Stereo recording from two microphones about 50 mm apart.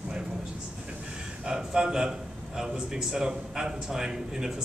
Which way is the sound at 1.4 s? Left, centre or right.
Centre.